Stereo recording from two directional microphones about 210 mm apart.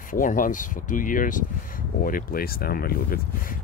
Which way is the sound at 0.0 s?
40° left (ahead or behind).